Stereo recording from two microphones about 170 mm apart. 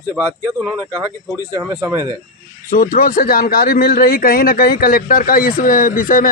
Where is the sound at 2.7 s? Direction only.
60° left (ahead or behind).